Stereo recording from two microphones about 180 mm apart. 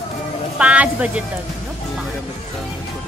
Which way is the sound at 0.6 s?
5° right (ahead or behind).